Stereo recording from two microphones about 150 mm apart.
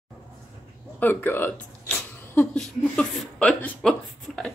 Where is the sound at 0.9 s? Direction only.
10° left (ahead or behind).